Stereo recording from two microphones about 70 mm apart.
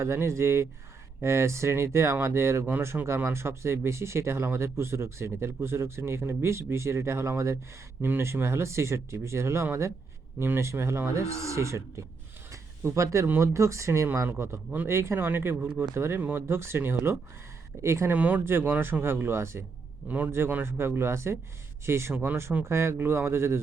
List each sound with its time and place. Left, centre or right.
0.0 s speech: right
12.5 s a sound: right
13.4 s speech: right
15.5 s speech: right
16.0 s speech: right
18.1 s speech: right
20.1 s speech: right